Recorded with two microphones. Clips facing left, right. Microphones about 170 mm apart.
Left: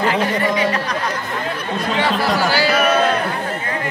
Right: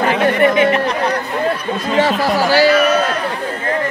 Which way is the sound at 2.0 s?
40° right (ahead or behind).